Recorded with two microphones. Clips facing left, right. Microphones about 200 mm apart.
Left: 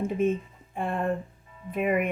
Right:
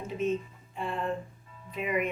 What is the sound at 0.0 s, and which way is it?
Speech, 55° left (ahead or behind).